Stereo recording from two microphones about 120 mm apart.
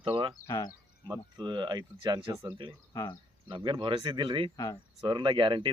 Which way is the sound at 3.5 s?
45° right (ahead or behind).